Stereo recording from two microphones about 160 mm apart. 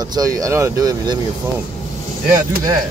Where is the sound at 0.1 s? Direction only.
20° right (ahead or behind).